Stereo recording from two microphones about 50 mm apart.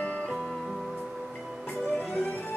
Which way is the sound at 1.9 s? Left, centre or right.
Left.